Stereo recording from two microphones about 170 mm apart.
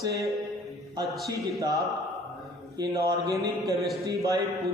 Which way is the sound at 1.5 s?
20° right (ahead or behind).